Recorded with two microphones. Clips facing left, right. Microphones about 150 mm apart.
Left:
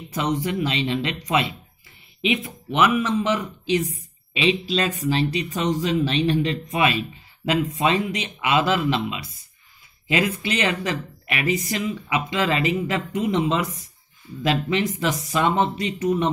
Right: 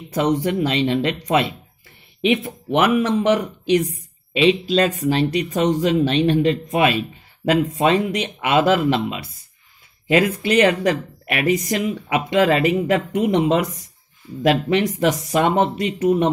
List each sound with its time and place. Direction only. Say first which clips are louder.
0.1 s speech: right 5 dB; 55° right (ahead or behind)